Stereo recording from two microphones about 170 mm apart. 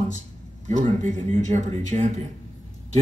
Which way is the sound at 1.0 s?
40° right (ahead or behind).